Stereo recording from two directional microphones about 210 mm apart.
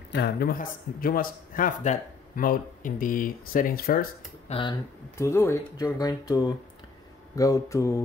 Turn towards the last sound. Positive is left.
turn(degrees=15)  # may be behind; listen again after turning